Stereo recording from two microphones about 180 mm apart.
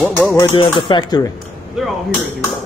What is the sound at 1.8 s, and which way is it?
Speech, centre (ahead or behind).